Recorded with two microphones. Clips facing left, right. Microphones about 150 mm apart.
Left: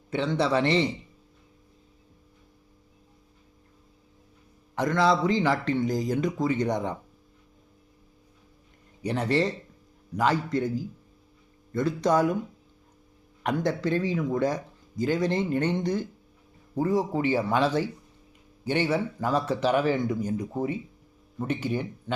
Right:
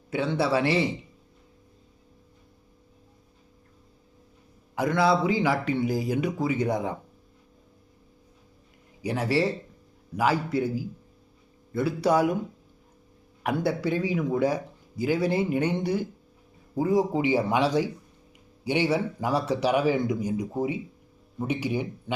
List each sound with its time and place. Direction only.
0.1 s a man's voice: 5° right (ahead or behind)
4.7 s speech: 10° right (ahead or behind)
9.0 s speech: 5° right (ahead or behind)
13.4 s speech: 10° right (ahead or behind)